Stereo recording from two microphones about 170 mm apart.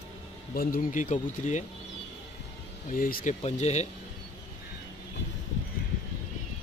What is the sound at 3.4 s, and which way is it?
Speech, 40° left (ahead or behind).